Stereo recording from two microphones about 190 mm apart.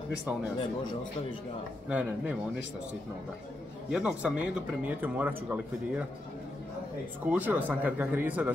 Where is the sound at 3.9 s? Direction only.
5° right (ahead or behind).